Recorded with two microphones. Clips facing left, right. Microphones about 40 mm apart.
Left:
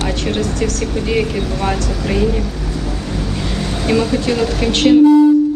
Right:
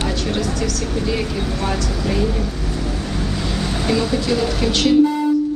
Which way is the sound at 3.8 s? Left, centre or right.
Left.